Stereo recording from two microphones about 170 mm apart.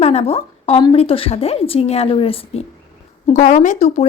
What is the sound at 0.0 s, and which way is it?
Speech, 40° left (ahead or behind).